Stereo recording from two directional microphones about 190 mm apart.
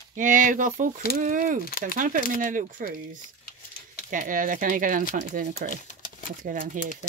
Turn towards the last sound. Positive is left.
turn(degrees=-45)  # may be behind; listen again after turning